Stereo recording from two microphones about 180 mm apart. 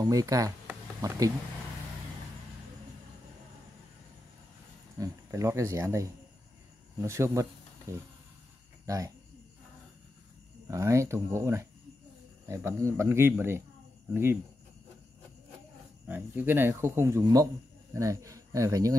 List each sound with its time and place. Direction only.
0.0 s speech: 20° right (ahead or behind)
4.9 s speech: 15° right (ahead or behind)
10.7 s speech: 15° right (ahead or behind)
16.1 s speech: 10° right (ahead or behind)